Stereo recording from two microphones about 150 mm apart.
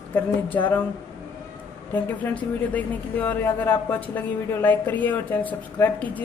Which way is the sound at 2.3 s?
10° left (ahead or behind).